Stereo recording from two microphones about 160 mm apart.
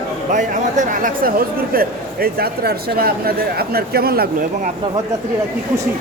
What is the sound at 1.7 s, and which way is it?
A man's voice, 70° right (ahead or behind).